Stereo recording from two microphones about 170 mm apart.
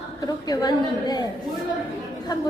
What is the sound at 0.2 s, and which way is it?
A woman's voice, 20° left (ahead or behind).